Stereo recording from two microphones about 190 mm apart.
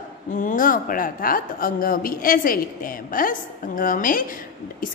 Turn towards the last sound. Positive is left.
turn(degrees=45)  # may be behind; listen again after turning